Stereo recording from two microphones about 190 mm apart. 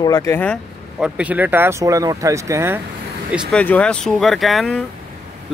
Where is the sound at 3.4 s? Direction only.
5° left (ahead or behind).